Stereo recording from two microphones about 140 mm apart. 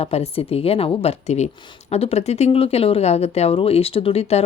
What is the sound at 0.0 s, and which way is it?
Speech, 45° left (ahead or behind).